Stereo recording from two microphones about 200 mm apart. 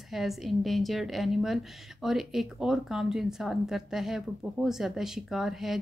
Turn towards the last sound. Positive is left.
turn(degrees=0)  # may be behind; listen again after turning